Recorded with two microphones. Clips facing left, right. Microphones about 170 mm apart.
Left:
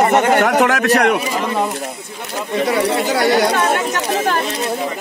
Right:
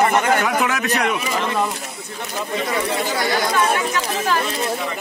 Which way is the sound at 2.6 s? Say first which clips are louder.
Left 7 dB; 65° left (ahead or behind).